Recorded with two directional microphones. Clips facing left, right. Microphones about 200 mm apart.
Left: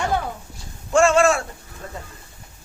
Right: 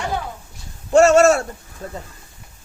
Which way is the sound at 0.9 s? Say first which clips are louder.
Right 4 dB; 40° right (ahead or behind).